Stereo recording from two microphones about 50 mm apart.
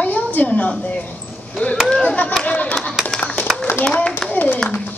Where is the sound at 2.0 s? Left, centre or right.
Left.